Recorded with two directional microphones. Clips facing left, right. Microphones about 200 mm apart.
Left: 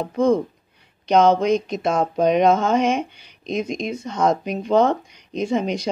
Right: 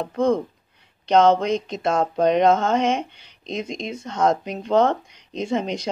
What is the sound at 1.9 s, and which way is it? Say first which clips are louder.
Speech: even; 15° left (ahead or behind).